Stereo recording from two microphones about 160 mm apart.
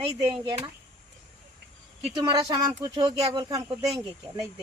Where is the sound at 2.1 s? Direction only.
25° right (ahead or behind).